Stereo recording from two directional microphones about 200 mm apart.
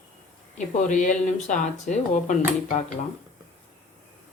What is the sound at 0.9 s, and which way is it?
Speech, 40° left (ahead or behind).